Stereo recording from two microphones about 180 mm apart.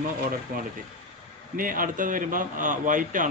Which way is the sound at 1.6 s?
50° right (ahead or behind).